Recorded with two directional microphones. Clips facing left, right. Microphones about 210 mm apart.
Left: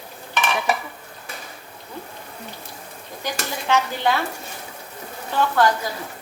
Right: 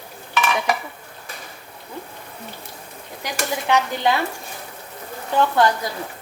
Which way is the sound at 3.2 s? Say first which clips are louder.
Right 3 dB; 15° right (ahead or behind).